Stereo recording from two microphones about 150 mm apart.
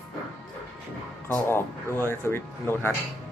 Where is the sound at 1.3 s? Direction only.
15° left (ahead or behind).